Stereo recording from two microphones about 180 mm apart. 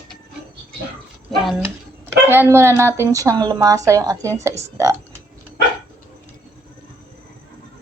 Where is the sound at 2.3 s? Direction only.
15° right (ahead or behind).